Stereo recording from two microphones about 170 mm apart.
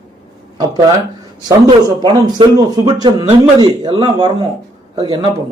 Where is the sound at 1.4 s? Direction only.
20° right (ahead or behind).